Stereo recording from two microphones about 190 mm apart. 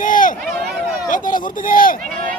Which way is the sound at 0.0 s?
45° left (ahead or behind).